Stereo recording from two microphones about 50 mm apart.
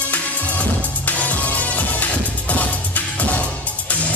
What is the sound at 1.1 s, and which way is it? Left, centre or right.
Music, left.